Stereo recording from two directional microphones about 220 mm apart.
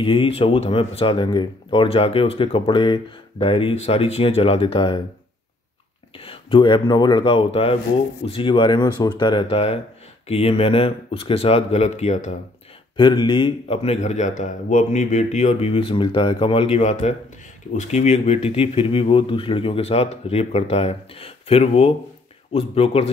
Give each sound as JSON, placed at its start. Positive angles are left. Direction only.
{"t": 0.0, "sound": "speech", "side_deg": 25}
{"t": 6.1, "sound": "speech", "side_deg": 25}
{"t": 12.9, "sound": "speech", "side_deg": 20}